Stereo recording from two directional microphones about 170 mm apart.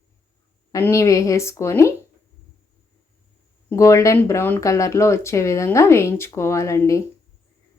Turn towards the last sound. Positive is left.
turn(degrees=15)  # may be behind; listen again after turning